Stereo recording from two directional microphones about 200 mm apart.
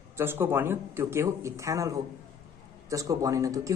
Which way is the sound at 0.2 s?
10° right (ahead or behind).